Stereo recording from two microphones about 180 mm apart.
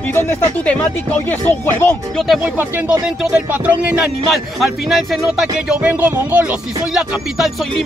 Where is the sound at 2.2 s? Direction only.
5° right (ahead or behind).